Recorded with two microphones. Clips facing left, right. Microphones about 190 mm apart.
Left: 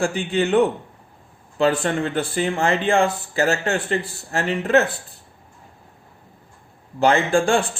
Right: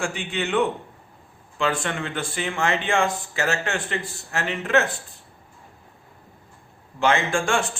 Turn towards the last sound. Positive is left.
turn(degrees=35)  # may be behind; listen again after turning